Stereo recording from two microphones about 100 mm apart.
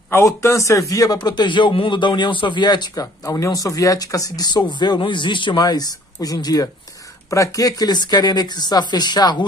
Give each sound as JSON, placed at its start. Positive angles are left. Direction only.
{"t": 0.1, "sound": "a man's voice", "side_deg": 30}
{"t": 3.3, "sound": "a man's voice", "side_deg": 35}